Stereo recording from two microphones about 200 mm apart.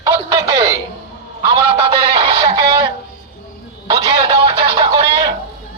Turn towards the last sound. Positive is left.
turn(degrees=-25)  # may be behind; listen again after turning